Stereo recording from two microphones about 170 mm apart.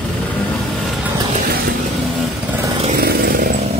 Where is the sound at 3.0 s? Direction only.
65° right (ahead or behind).